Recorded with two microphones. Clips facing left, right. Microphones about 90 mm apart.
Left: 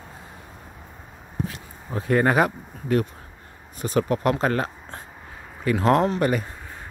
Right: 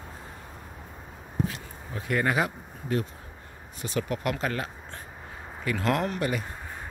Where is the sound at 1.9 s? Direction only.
40° left (ahead or behind); by 3.1 s 60° left (ahead or behind).